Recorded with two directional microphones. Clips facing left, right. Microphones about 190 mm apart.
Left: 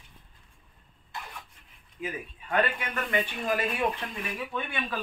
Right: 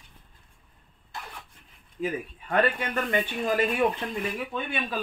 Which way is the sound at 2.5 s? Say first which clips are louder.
Right 3 dB; 35° right (ahead or behind).